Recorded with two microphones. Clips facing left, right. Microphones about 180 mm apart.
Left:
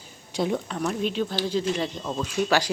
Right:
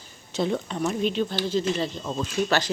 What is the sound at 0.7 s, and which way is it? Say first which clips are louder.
Speech: right 1 dB; 5° right (ahead or behind).